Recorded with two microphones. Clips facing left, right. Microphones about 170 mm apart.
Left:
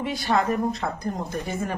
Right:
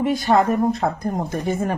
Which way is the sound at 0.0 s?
45° right (ahead or behind).